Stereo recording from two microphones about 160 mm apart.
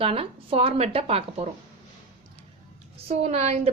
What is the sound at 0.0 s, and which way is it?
A woman's voice, 35° right (ahead or behind).